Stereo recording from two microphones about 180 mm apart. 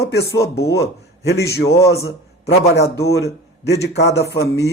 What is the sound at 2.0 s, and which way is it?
A man's voice, 65° left (ahead or behind).